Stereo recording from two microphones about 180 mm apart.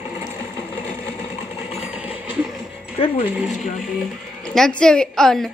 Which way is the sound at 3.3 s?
5° right (ahead or behind).